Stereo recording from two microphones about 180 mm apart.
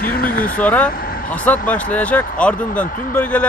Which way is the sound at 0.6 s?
10° left (ahead or behind).